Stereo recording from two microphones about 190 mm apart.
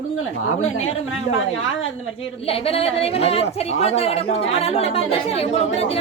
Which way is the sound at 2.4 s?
30° left (ahead or behind).